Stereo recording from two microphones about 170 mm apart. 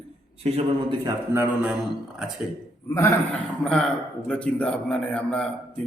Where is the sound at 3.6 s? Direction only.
5° left (ahead or behind).